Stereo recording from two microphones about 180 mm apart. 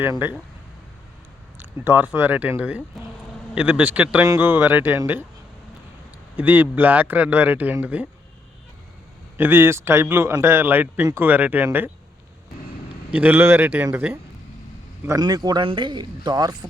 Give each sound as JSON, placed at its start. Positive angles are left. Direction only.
{"t": 0.0, "sound": "a man's voice", "side_deg": -10}
{"t": 1.8, "sound": "a man's voice", "side_deg": -10}
{"t": 6.3, "sound": "a man's voice", "side_deg": -10}
{"t": 9.4, "sound": "a man's voice", "side_deg": -10}
{"t": 13.1, "sound": "a man's voice", "side_deg": -10}